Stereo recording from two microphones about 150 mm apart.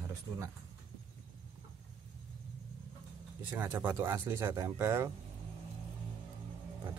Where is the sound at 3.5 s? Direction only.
15° right (ahead or behind).